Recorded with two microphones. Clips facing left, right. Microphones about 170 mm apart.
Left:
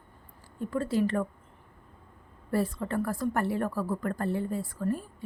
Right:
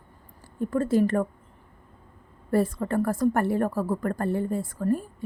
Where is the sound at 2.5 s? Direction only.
45° right (ahead or behind).